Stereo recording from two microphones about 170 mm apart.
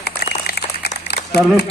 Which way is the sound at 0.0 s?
70° left (ahead or behind).